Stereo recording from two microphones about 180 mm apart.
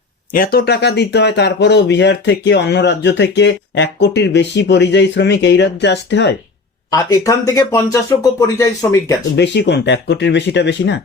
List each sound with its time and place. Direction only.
0.3 s speech: 60° left (ahead or behind)
6.9 s speech: 20° left (ahead or behind)
9.3 s speech: 75° left (ahead or behind)